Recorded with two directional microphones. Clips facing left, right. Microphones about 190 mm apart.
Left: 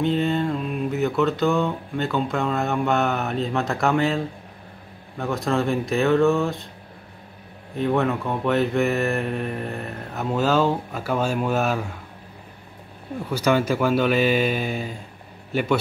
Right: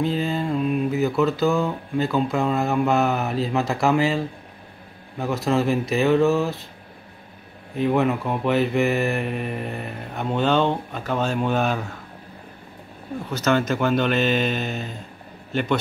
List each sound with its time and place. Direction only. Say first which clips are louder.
0.0 s mantra: left 2 dB; centre (ahead or behind)
7.7 s mantra: right 1 dB; centre (ahead or behind)
13.3 s speech: left 1 dB; 10° left (ahead or behind)